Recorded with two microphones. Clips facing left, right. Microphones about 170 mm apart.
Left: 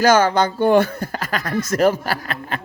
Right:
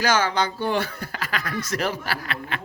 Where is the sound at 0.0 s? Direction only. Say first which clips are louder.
Left 7 dB; 50° left (ahead or behind).